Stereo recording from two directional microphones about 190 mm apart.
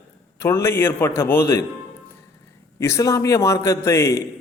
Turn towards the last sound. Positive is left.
turn(degrees=15)  # may be behind; listen again after turning